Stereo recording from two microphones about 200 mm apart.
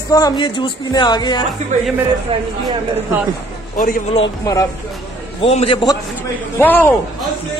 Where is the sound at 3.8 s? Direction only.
40° left (ahead or behind).